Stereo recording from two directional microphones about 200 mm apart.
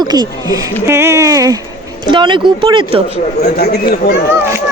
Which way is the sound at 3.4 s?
50° left (ahead or behind).